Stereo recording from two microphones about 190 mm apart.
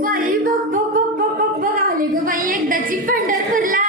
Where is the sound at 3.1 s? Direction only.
45° right (ahead or behind).